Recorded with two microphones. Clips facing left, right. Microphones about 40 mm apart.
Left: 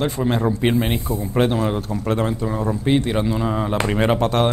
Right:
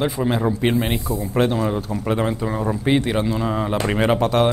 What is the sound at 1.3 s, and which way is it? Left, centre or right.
Speech, centre.